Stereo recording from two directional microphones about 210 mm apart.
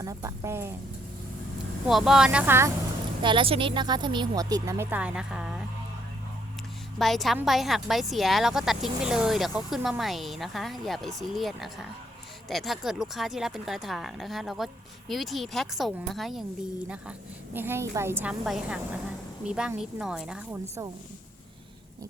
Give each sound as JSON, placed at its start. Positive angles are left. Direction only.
{"t": 0.0, "sound": "speech", "side_deg": -15}
{"t": 1.9, "sound": "a woman's voice", "side_deg": 0}
{"t": 3.2, "sound": "speech", "side_deg": -25}
{"t": 7.0, "sound": "a woman's voice", "side_deg": 0}